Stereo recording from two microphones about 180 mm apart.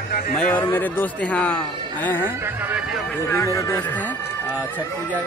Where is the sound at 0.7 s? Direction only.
10° left (ahead or behind).